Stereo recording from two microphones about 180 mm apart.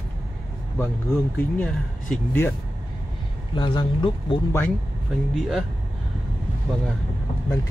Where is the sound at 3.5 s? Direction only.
25° left (ahead or behind).